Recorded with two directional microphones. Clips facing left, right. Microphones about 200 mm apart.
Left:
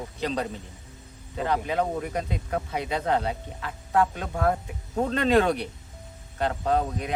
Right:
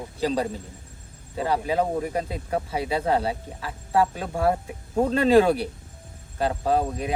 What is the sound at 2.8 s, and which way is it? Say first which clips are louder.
Speech: right 2 dB; 5° right (ahead or behind).